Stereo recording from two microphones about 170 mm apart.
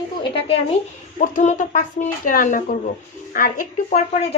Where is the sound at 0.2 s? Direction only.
35° left (ahead or behind).